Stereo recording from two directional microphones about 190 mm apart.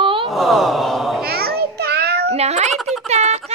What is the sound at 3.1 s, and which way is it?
Speech, 35° right (ahead or behind).